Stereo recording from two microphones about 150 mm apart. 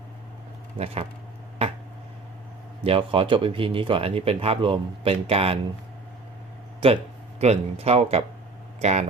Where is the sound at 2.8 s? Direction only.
35° right (ahead or behind).